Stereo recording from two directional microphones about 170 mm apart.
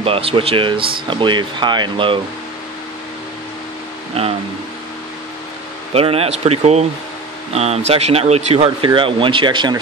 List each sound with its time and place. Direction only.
0.0 s speech: 35° right (ahead or behind)
5.9 s speech: 35° right (ahead or behind)